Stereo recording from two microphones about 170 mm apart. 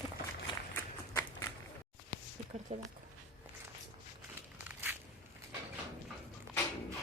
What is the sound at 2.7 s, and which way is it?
Speech, 40° right (ahead or behind).